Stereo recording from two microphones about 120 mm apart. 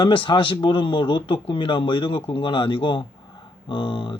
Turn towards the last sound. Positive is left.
turn(degrees=45)  # may be behind; listen again after turning